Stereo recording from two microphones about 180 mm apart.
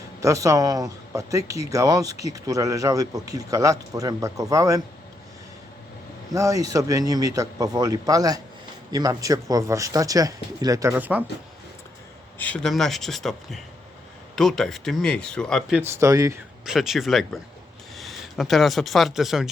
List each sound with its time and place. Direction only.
0.2 s speech: 15° right (ahead or behind)
6.3 s speech: 20° right (ahead or behind)
10.9 s speech: 10° right (ahead or behind)
12.4 s speech: 5° left (ahead or behind)
15.8 s speech: 15° right (ahead or behind)
16.6 s speech: centre (ahead or behind)